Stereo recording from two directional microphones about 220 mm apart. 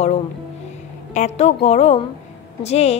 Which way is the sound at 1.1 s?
30° left (ahead or behind).